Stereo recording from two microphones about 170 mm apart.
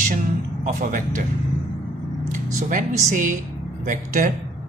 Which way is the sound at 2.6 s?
50° right (ahead or behind).